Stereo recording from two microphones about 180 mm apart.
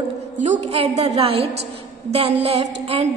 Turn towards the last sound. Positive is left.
turn(degrees=-35)  # may be behind; listen again after turning